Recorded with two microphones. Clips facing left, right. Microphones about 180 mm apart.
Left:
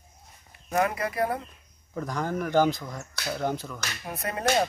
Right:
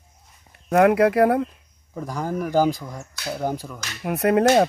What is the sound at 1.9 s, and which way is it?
Speech, 10° right (ahead or behind).